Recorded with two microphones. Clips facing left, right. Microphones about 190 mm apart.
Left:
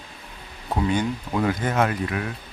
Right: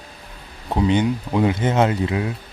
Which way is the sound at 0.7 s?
20° right (ahead or behind).